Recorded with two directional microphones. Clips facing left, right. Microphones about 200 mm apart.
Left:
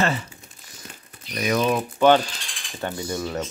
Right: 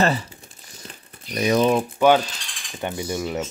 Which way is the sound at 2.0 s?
10° right (ahead or behind).